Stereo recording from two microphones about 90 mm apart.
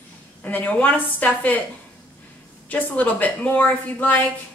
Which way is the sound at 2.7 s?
20° left (ahead or behind).